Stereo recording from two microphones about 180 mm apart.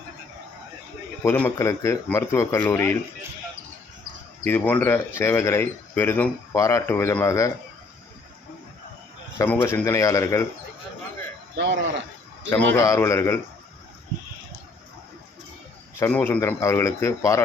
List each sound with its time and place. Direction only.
1.2 s speech: 10° left (ahead or behind)
4.4 s speech: 10° left (ahead or behind)
9.4 s speech: 15° left (ahead or behind)
11.5 s speech: 75° right (ahead or behind)
12.5 s speech: 15° left (ahead or behind)
16.0 s speech: 10° left (ahead or behind)